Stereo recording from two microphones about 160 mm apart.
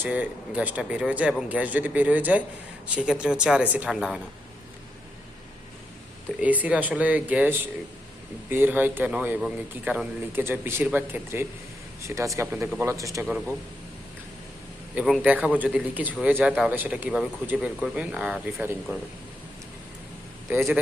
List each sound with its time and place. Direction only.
0.0 s a man's voice: 10° right (ahead or behind)
6.4 s a man's voice: 10° right (ahead or behind)
14.9 s a man's voice: 5° right (ahead or behind)
20.5 s a man's voice: 15° right (ahead or behind)